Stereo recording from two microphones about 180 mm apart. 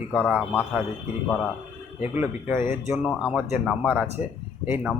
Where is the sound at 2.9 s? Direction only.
Centre (ahead or behind).